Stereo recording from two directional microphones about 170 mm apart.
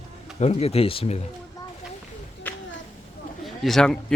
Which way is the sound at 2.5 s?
10° left (ahead or behind).